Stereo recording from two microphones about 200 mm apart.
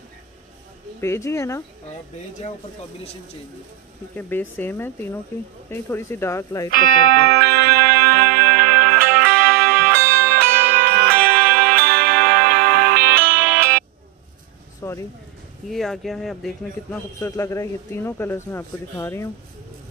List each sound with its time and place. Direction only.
1.0 s speech: 15° left (ahead or behind)
4.3 s speech: 10° left (ahead or behind)
7.2 s music: 50° right (ahead or behind)
14.8 s a sound: 15° left (ahead or behind)
15.7 s speech: centre (ahead or behind)
17.2 s speech: 15° left (ahead or behind)